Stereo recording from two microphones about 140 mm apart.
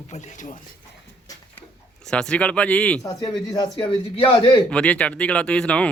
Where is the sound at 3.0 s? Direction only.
25° left (ahead or behind).